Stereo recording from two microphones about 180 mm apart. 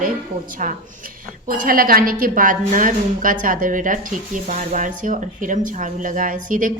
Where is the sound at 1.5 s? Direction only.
55° right (ahead or behind).